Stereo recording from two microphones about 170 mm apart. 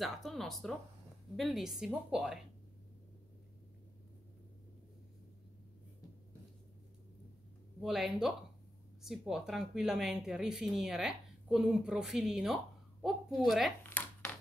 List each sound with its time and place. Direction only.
0.0 s speech: centre (ahead or behind)
7.8 s speech: centre (ahead or behind)
13.8 s a sound: 10° left (ahead or behind)